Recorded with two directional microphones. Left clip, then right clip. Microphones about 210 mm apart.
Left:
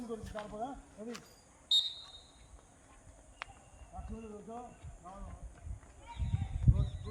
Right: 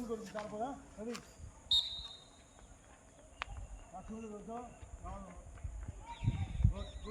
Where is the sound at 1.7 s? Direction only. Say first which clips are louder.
Left 2 dB; 10° left (ahead or behind).